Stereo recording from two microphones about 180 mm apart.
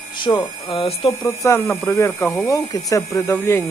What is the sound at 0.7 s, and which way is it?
Speech, 30° left (ahead or behind).